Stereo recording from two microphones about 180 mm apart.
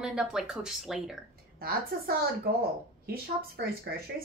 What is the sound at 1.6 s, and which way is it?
Speech, 55° right (ahead or behind).